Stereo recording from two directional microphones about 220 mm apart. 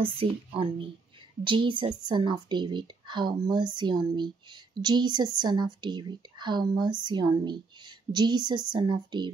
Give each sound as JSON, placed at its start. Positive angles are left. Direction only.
{"t": 0.0, "sound": "speech", "side_deg": -25}